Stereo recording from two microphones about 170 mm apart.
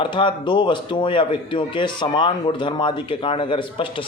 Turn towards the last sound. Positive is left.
turn(degrees=30)  # may be behind; listen again after turning